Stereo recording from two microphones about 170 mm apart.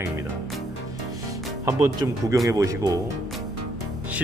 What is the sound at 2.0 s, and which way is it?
Speech, 15° right (ahead or behind).